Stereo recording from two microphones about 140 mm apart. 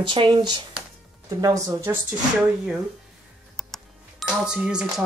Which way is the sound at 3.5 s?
Centre (ahead or behind).